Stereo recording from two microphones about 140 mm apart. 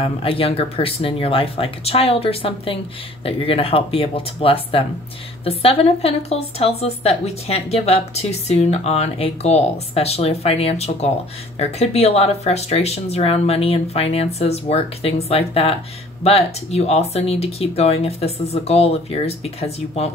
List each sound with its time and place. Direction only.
0.0 s a woman's voice: 40° left (ahead or behind)